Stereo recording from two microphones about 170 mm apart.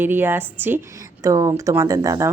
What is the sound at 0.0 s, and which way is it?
Speech, 10° right (ahead or behind).